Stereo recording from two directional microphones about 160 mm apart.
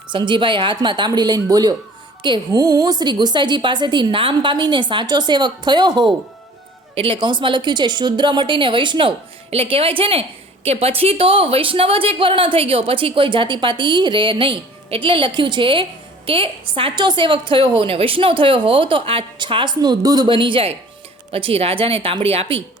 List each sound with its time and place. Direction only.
0.1 s a woman's voice: 30° right (ahead or behind)